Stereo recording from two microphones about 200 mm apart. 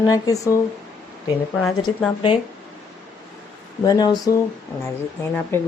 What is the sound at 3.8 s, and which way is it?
Speech, 20° left (ahead or behind).